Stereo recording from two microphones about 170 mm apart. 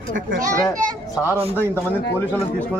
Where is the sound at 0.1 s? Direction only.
55° right (ahead or behind).